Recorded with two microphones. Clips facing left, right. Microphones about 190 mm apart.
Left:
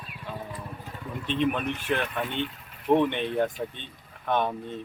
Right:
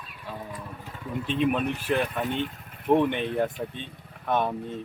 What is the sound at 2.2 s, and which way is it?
Speech, 40° right (ahead or behind).